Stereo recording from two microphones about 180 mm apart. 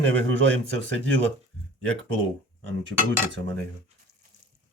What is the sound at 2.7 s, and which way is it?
Cutlery, 90° right.